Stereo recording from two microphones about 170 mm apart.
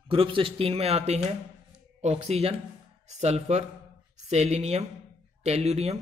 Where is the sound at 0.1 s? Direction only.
30° right (ahead or behind).